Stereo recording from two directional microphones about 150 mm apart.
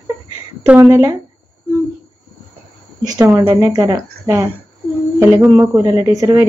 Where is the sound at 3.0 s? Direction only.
25° right (ahead or behind).